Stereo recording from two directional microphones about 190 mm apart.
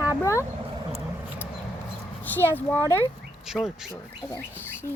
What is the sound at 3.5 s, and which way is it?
Speech, centre (ahead or behind).